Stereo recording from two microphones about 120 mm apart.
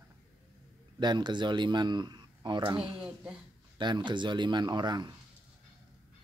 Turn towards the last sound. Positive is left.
turn(degrees=-35)  # may be behind; listen again after turning